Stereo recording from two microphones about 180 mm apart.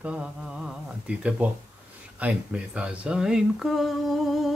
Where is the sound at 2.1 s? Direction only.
10° right (ahead or behind).